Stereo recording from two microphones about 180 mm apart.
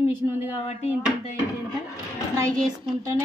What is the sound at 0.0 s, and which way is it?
Speech, 10° right (ahead or behind).